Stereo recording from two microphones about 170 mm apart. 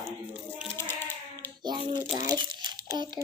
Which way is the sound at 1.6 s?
25° right (ahead or behind).